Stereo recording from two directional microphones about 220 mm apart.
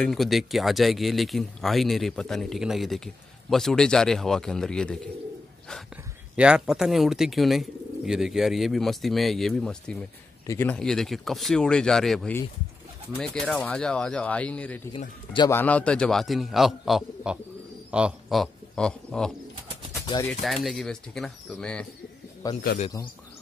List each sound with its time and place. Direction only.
0.0 s speech: centre (ahead or behind)
6.3 s speech: 5° right (ahead or behind)
15.3 s a man's voice: 20° left (ahead or behind)
15.6 s speech: 5° left (ahead or behind)
20.1 s speech: 15° left (ahead or behind)
20.4 s speech: centre (ahead or behind)
22.4 s a man's voice: 15° left (ahead or behind)